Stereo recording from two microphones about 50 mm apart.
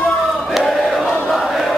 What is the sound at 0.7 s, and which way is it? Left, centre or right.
Crowd, centre.